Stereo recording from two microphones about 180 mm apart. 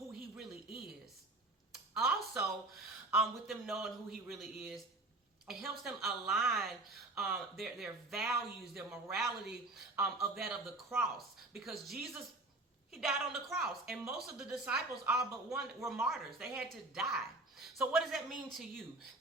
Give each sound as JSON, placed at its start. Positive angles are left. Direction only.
{"t": 1.7, "sound": "speech", "side_deg": 0}